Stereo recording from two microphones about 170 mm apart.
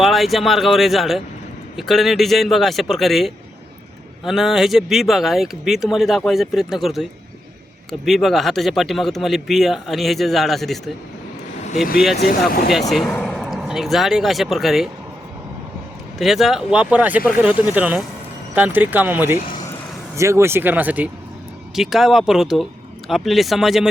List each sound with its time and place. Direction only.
0.0 s speech: centre (ahead or behind)
12.5 s speech: 60° left (ahead or behind)
12.9 s speech: 5° left (ahead or behind)
16.1 s speech: centre (ahead or behind)